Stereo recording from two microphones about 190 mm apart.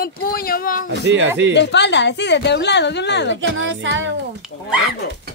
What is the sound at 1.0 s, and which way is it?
Speech, 70° right (ahead or behind).